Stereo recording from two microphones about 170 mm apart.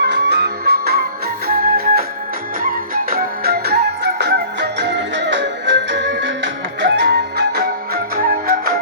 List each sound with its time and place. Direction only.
0.0 s music: 80° right